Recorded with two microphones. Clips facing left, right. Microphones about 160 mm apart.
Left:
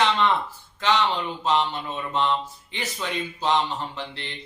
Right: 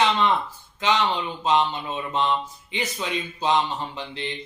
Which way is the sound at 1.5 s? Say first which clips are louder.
Right 2 dB; 15° right (ahead or behind).